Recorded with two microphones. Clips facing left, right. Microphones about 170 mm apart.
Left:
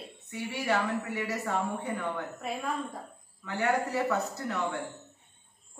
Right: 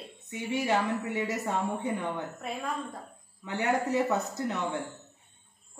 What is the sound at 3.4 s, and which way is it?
A woman's voice, 20° right (ahead or behind).